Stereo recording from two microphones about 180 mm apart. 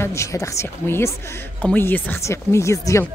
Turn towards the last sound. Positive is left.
turn(degrees=15)  # may be behind; listen again after turning